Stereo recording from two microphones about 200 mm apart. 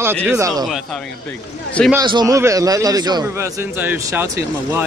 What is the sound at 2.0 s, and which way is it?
A man's voice, 20° right (ahead or behind).